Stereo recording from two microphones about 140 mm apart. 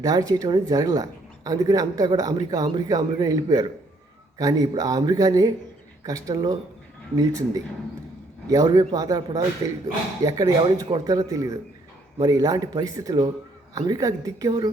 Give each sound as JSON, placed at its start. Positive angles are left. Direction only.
{"t": 0.0, "sound": "speech", "side_deg": -25}